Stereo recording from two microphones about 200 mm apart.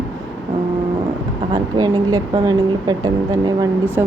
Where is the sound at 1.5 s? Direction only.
20° right (ahead or behind).